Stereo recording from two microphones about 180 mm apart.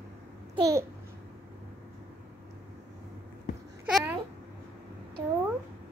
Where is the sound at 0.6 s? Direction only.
20° right (ahead or behind).